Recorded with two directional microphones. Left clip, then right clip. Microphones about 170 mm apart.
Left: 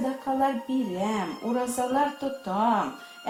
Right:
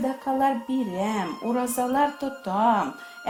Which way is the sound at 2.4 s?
50° right (ahead or behind).